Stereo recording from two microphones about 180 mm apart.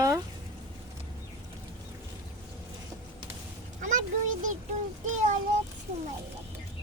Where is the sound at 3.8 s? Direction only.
45° right (ahead or behind).